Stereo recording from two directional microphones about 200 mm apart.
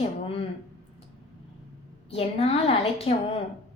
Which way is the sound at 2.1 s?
30° left (ahead or behind).